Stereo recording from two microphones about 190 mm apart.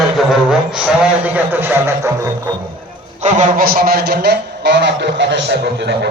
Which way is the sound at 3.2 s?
40° right (ahead or behind).